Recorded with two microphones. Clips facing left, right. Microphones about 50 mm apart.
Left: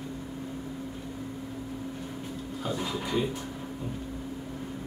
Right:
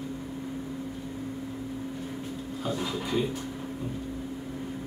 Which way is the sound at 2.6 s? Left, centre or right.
Centre.